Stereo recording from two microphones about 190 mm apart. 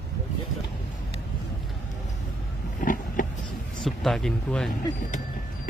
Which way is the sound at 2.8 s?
45° left (ahead or behind).